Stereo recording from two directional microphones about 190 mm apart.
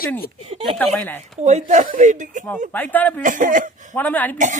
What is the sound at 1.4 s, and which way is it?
Speech, 35° right (ahead or behind).